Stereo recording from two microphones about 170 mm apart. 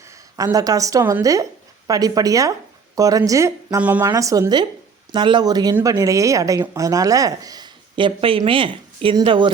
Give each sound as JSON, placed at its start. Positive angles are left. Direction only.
{"t": 0.3, "sound": "speech", "side_deg": -20}